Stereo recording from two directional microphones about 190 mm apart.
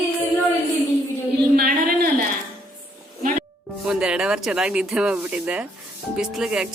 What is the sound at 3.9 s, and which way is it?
Speech, 5° right (ahead or behind).